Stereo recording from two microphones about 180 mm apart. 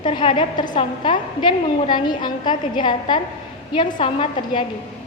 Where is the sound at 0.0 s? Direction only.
25° left (ahead or behind).